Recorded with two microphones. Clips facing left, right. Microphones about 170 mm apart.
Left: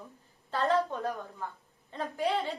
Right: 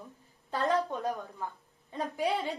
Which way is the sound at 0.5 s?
15° right (ahead or behind).